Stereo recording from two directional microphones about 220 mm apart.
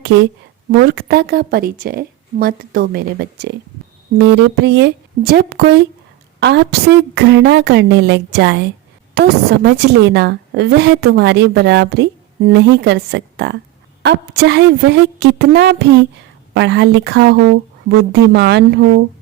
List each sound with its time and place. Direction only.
0.8 s a woman's voice: 45° right (ahead or behind)